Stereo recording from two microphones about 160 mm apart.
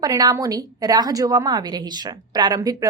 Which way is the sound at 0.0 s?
25° right (ahead or behind).